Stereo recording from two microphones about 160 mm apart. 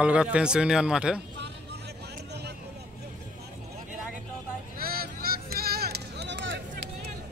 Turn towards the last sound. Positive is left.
turn(degrees=-90)